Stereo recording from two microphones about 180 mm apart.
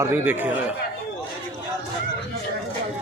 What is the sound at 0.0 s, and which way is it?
Speech, 10° right (ahead or behind).